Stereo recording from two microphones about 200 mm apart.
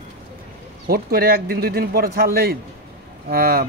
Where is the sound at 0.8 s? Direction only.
50° right (ahead or behind).